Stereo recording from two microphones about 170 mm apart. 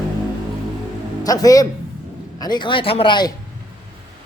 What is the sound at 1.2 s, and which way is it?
Speech, 20° left (ahead or behind).